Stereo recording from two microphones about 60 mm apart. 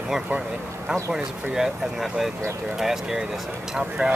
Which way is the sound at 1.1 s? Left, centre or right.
Centre.